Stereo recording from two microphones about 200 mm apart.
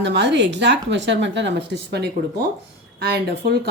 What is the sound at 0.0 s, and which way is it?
A woman's voice, 60° right (ahead or behind).